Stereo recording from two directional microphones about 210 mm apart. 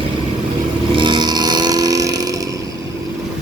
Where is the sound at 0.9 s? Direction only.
20° right (ahead or behind).